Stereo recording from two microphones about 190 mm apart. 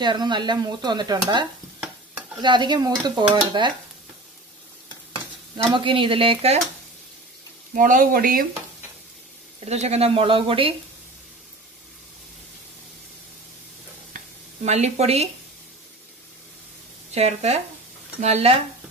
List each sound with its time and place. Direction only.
0.0 s stir: 25° right (ahead or behind)
5.8 s stir: 25° right (ahead or behind)
7.7 s speech: 45° right (ahead or behind)
9.7 s stir: 35° right (ahead or behind)
14.1 s sizzle: 35° right (ahead or behind)
17.1 s speech: 35° right (ahead or behind)